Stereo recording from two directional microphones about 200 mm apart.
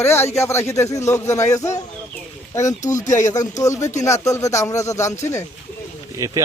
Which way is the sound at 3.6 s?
15° left (ahead or behind).